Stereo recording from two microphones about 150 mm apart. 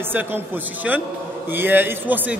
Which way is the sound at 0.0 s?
15° right (ahead or behind).